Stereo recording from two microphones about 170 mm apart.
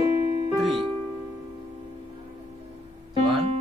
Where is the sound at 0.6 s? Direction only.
Centre (ahead or behind).